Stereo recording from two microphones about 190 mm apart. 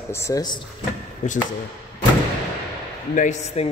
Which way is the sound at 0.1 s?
15° left (ahead or behind).